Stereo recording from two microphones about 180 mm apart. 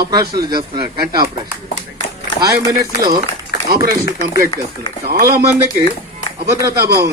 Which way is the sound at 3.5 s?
60° left (ahead or behind).